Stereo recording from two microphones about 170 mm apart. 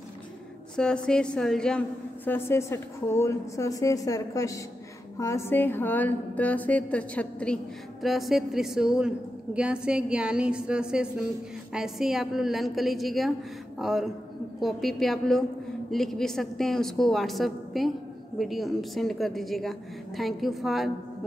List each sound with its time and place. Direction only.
0.7 s a woman's voice: 5° left (ahead or behind)